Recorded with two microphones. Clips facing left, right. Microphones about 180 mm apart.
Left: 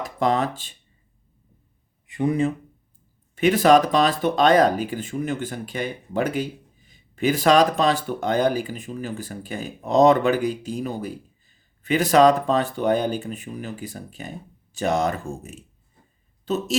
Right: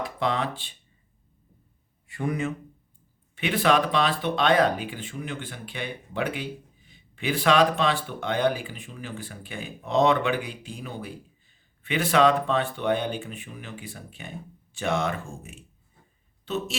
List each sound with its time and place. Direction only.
0.0 s speech: 45° left (ahead or behind)
2.0 s speech: 20° left (ahead or behind)
3.3 s speech: 40° left (ahead or behind)